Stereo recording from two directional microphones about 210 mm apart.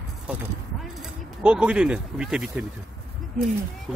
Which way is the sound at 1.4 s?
5° right (ahead or behind).